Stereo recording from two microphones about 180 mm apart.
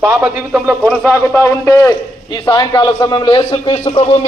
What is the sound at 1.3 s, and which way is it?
A man's voice, 15° left (ahead or behind).